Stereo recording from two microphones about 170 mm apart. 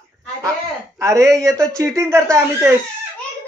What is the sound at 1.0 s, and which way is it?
Speech, 15° right (ahead or behind).